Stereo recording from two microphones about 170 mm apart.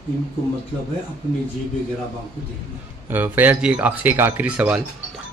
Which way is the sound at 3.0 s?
10° right (ahead or behind).